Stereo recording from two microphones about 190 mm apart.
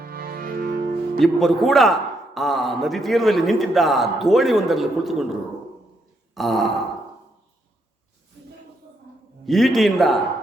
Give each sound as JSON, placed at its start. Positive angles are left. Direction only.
{"t": 0.0, "sound": "music", "side_deg": -50}
{"t": 1.2, "sound": "a man's voice", "side_deg": 0}
{"t": 6.3, "sound": "a man's voice", "side_deg": 0}
{"t": 9.5, "sound": "a man's voice", "side_deg": 0}